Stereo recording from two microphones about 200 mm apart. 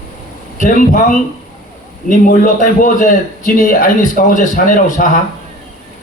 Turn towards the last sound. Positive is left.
turn(degrees=40)  # may be behind; listen again after turning